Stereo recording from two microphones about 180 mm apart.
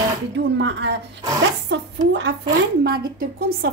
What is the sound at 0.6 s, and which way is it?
Speech, 75° right (ahead or behind).